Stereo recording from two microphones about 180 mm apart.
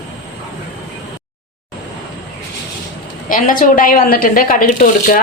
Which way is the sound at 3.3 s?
50° left (ahead or behind).